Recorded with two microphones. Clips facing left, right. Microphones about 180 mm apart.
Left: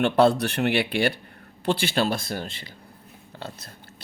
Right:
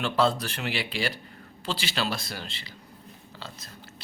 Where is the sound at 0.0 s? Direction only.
60° left (ahead or behind).